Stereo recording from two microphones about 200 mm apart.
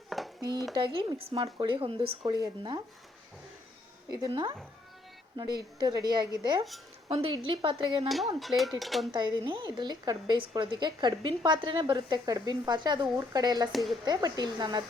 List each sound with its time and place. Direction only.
0.1 s a sound: centre (ahead or behind)
0.7 s a woman's voice: 25° right (ahead or behind)
4.1 s a woman's voice: 20° right (ahead or behind)
8.0 s speech: centre (ahead or behind)
9.1 s a woman's voice: 20° right (ahead or behind)